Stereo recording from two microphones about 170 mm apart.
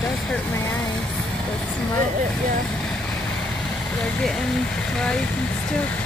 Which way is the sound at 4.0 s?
5° left (ahead or behind).